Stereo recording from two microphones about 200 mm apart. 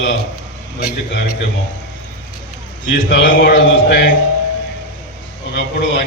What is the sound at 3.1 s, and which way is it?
A man's voice, 60° left (ahead or behind).